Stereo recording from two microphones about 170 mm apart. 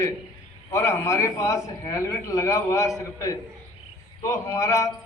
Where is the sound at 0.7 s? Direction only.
20° left (ahead or behind).